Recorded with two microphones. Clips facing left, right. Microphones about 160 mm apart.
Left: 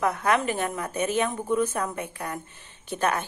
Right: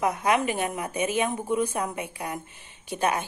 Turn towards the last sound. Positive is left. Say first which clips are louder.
# even
turn(degrees=-10)  # may be behind; listen again after turning